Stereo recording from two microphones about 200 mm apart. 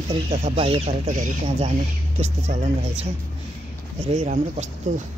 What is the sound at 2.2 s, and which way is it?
Speech, 35° right (ahead or behind).